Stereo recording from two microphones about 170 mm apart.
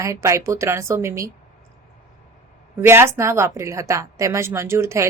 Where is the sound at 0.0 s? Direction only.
15° right (ahead or behind).